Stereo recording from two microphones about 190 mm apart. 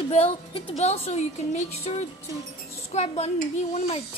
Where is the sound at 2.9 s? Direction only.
35° left (ahead or behind).